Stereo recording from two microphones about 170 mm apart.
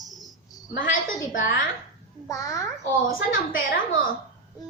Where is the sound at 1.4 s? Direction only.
55° left (ahead or behind).